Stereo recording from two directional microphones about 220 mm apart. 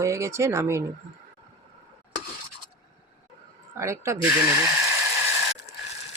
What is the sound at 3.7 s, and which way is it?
Speech, 15° right (ahead or behind).